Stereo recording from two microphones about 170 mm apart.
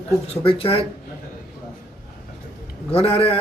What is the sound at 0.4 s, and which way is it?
Speech, 35° left (ahead or behind).